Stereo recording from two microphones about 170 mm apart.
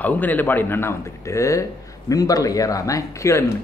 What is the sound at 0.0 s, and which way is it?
Speech, 10° left (ahead or behind).